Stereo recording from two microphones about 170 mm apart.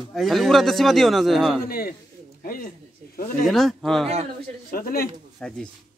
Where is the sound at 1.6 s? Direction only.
60° left (ahead or behind).